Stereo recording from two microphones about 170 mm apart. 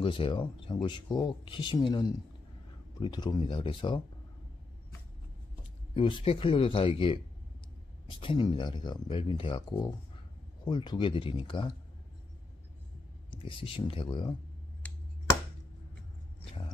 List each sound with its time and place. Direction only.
0.0 s speech: 30° left (ahead or behind)
5.9 s speech: 30° left (ahead or behind)
13.3 s speech: 30° left (ahead or behind)